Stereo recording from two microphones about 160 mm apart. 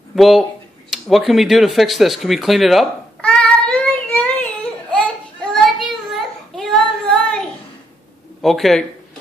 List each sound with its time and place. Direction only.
0.1 s a sound: centre (ahead or behind)
5.0 s child singing: centre (ahead or behind)
8.4 s speech: centre (ahead or behind)